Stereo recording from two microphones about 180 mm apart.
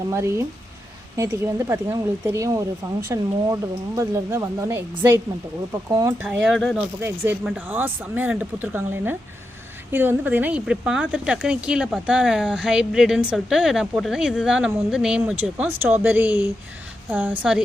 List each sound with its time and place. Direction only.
0.1 s speech: 15° right (ahead or behind)
6.2 s speech: 5° right (ahead or behind)